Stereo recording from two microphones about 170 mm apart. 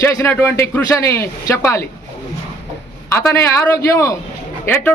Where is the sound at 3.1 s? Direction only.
15° left (ahead or behind).